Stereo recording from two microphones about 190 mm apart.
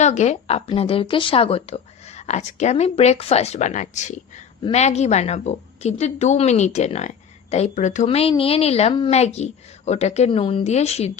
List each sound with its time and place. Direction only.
0.0 s a woman's voice: 35° left (ahead or behind)